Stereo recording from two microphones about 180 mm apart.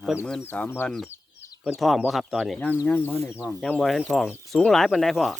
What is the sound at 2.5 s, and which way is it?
Speech, 10° left (ahead or behind).